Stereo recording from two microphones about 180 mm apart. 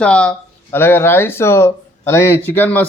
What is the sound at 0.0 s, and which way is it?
Speech, 5° left (ahead or behind).